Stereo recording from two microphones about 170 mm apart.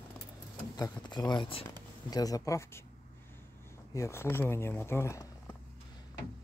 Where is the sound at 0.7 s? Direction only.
25° left (ahead or behind).